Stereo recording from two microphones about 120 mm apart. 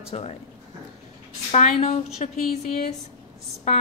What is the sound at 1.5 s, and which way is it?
Speech, 75° left (ahead or behind).